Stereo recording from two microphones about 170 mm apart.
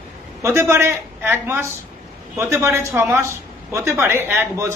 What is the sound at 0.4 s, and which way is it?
A woman's voice, 15° right (ahead or behind).